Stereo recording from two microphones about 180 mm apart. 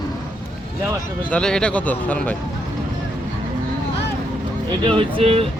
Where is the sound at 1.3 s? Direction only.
5° left (ahead or behind).